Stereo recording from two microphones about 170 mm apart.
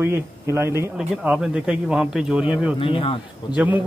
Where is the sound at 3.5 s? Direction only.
10° right (ahead or behind).